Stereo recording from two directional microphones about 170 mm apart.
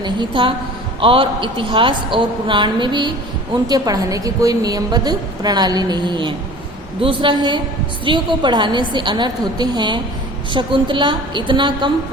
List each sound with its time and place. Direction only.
0.0 s a woman's voice: 30° right (ahead or behind)